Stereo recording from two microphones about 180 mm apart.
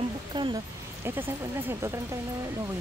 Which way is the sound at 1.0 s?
10° right (ahead or behind).